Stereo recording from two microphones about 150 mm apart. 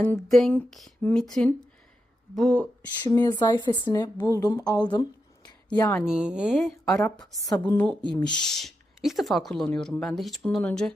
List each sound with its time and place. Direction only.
0.0 s speech: 5° left (ahead or behind)
3.1 s a woman's voice: 25° left (ahead or behind)
6.1 s speech: 5° right (ahead or behind)
7.3 s a woman's voice: 25° left (ahead or behind)
7.6 s a woman's voice: 10° left (ahead or behind)